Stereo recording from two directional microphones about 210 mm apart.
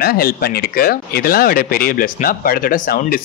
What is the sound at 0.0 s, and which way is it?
Speech, 45° left (ahead or behind).